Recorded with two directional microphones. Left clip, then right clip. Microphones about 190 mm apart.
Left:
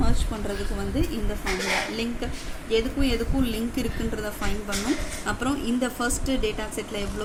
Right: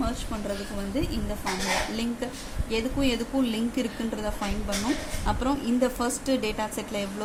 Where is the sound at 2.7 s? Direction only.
35° right (ahead or behind).